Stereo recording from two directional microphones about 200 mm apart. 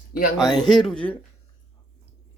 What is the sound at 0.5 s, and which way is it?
Speech, centre (ahead or behind).